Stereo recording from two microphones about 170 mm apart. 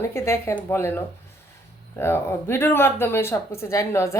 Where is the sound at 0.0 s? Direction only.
15° left (ahead or behind).